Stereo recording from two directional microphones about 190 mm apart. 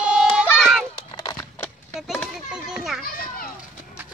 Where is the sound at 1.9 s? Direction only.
Centre (ahead or behind).